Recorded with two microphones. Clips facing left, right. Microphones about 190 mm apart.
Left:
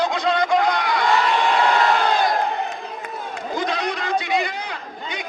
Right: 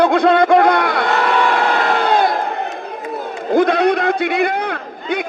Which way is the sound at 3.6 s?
55° right (ahead or behind).